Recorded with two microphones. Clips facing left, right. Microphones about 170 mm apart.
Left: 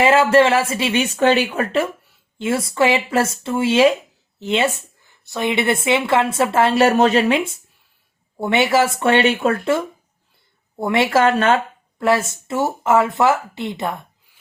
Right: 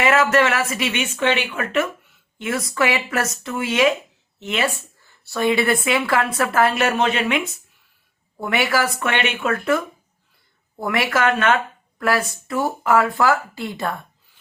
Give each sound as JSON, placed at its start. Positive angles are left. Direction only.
{"t": 0.0, "sound": "speech", "side_deg": 30}